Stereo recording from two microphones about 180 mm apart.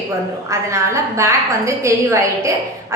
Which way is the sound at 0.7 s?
15° right (ahead or behind).